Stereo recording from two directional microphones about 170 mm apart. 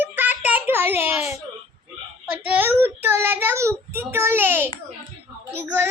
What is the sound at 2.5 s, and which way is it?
A child's voice, 10° right (ahead or behind).